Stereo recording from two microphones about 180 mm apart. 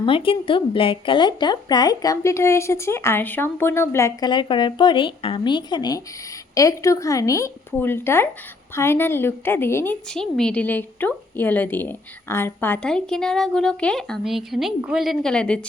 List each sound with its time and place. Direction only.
0.0 s a woman's voice: 30° left (ahead or behind); by 15.6 s 5° left (ahead or behind)